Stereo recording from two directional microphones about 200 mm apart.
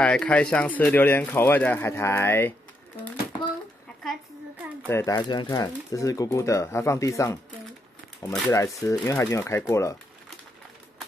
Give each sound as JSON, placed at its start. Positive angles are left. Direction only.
{"t": 0.0, "sound": "speech", "side_deg": 5}
{"t": 4.8, "sound": "speech", "side_deg": 15}